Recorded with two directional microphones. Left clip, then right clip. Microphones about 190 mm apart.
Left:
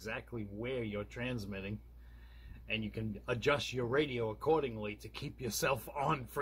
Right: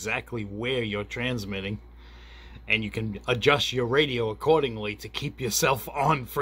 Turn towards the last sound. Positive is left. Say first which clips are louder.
# right 11 dB
turn(degrees=-20)  # may be behind; listen again after turning